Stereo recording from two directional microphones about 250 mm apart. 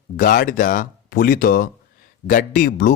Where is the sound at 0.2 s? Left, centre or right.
Left.